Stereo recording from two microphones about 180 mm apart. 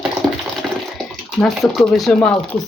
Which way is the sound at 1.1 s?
Centre (ahead or behind).